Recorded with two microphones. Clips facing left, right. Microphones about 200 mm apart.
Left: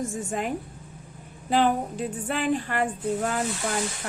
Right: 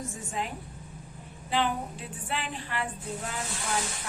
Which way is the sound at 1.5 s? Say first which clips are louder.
Left 7 dB; 45° left (ahead or behind).